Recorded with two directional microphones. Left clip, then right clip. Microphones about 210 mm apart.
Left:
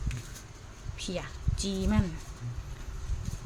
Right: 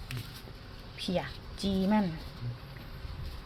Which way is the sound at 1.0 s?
10° right (ahead or behind).